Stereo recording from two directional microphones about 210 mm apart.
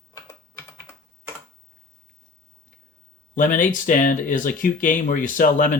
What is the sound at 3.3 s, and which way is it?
Speech, 40° left (ahead or behind).